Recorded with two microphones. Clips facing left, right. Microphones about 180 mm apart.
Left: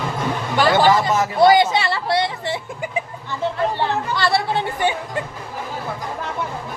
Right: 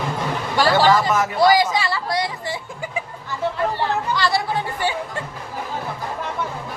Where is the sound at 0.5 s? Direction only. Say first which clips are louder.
Left 1 dB; 20° left (ahead or behind).